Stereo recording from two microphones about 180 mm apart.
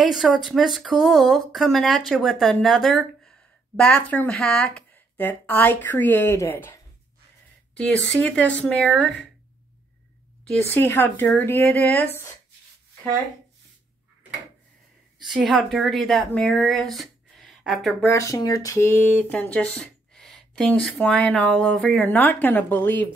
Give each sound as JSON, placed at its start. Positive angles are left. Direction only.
{"t": 0.1, "sound": "speech", "side_deg": 0}
{"t": 10.7, "sound": "speech", "side_deg": 10}
{"t": 15.1, "sound": "a woman's voice", "side_deg": 0}
{"t": 18.0, "sound": "speech", "side_deg": 15}